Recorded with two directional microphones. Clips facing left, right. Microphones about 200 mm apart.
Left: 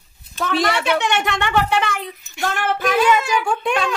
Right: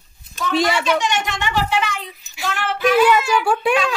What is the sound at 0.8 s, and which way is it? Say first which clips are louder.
Speech: left 1 dB; 60° left (ahead or behind).